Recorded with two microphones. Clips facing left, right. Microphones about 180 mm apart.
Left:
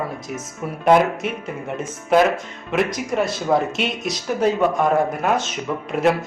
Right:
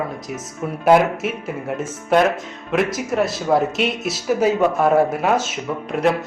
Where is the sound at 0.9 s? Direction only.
5° right (ahead or behind).